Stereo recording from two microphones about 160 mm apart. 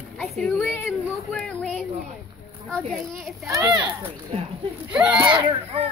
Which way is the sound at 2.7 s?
5° left (ahead or behind).